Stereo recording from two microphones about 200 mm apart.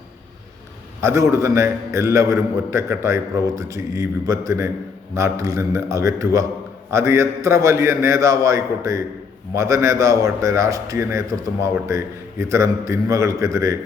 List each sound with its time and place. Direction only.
1.0 s a man's voice: 15° right (ahead or behind)